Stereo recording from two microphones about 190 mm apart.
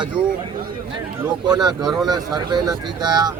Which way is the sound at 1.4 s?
20° right (ahead or behind).